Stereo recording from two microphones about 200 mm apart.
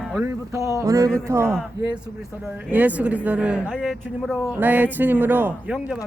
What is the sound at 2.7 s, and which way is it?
A man's voice, 10° right (ahead or behind).